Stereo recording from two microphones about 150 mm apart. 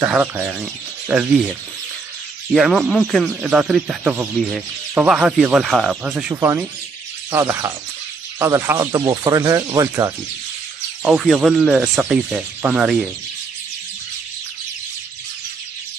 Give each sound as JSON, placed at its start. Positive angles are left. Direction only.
{"t": 0.0, "sound": "speech", "side_deg": -10}
{"t": 2.5, "sound": "speech", "side_deg": 0}
{"t": 6.3, "sound": "speech", "side_deg": -20}
{"t": 11.1, "sound": "speech", "side_deg": 0}